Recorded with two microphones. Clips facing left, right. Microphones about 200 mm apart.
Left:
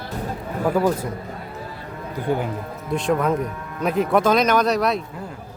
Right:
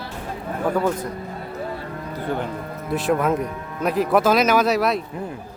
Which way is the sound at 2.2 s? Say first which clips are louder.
Left 3 dB; 10° left (ahead or behind).